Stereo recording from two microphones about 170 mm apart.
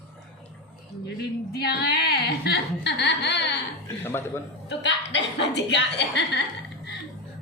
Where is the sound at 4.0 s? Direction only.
15° left (ahead or behind).